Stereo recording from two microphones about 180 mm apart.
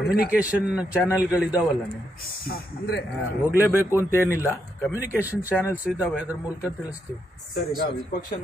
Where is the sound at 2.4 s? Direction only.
55° left (ahead or behind).